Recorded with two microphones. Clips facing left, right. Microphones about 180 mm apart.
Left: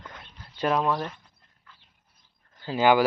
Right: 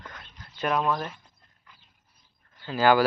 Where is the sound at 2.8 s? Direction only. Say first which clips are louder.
Even; 15° left (ahead or behind).